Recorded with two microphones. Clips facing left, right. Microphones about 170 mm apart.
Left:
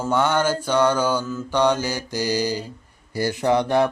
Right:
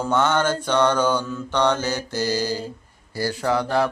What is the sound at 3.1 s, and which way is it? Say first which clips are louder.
Speech: left 3 dB; 20° left (ahead or behind).